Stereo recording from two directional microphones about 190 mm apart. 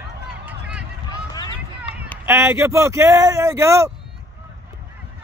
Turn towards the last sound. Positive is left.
turn(degrees=-15)  # may be behind; listen again after turning